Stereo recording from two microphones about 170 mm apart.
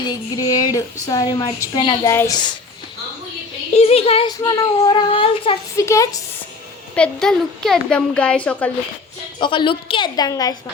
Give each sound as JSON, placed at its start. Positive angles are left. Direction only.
{"t": 0.1, "sound": "a woman's voice", "side_deg": 20}
{"t": 3.8, "sound": "speech", "side_deg": 35}
{"t": 4.3, "sound": "a woman's voice", "side_deg": 20}
{"t": 5.7, "sound": "a woman's voice", "side_deg": 15}
{"t": 6.9, "sound": "a woman's voice", "side_deg": 5}
{"t": 9.4, "sound": "a woman's voice", "side_deg": 30}